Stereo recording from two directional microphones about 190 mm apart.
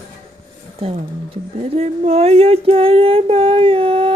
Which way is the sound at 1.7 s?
35° right (ahead or behind).